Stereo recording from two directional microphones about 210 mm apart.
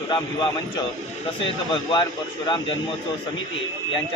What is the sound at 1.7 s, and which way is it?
Speech, 20° left (ahead or behind).